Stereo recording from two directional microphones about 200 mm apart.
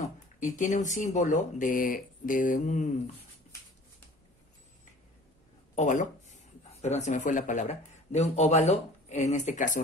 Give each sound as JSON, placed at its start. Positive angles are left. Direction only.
{"t": 0.0, "sound": "speech", "side_deg": 40}
{"t": 5.8, "sound": "speech", "side_deg": 40}